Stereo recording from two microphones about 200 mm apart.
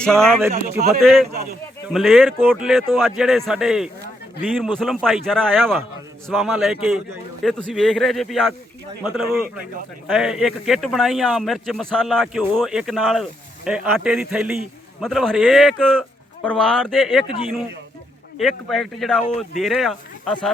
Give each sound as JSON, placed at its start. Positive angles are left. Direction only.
{"t": 0.0, "sound": "a man's voice", "side_deg": 5}
{"t": 0.7, "sound": "speech", "side_deg": -50}
{"t": 1.9, "sound": "a man's voice", "side_deg": 0}
{"t": 18.3, "sound": "a man's voice", "side_deg": 0}